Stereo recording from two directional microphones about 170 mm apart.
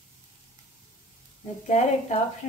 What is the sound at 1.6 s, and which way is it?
Speech, 40° left (ahead or behind).